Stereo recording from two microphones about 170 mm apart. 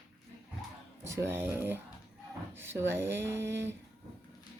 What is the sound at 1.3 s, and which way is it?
Speech, 15° right (ahead or behind).